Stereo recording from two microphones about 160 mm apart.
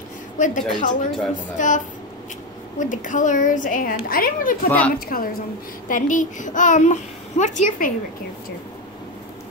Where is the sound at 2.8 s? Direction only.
55° left (ahead or behind).